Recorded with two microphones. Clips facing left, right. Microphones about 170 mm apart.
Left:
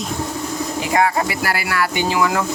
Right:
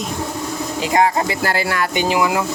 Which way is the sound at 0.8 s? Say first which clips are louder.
Right 2 dB; 25° right (ahead or behind).